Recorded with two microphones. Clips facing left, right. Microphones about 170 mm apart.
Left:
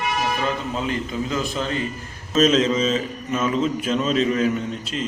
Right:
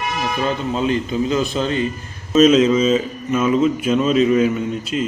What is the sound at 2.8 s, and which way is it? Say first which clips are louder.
A man's voice: right 5 dB; 10° right (ahead or behind).